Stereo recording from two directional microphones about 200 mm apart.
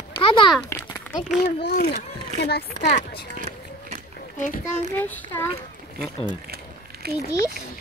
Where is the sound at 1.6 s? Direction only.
55° left (ahead or behind).